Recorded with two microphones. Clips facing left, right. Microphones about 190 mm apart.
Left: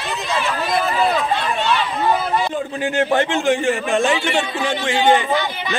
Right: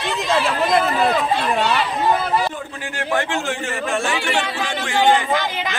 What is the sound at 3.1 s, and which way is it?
A man's voice, 20° left (ahead or behind).